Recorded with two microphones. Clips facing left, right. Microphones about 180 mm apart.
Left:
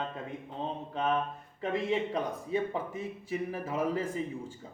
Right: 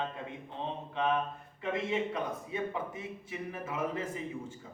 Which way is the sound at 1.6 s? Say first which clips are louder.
Left 2 dB; 35° left (ahead or behind).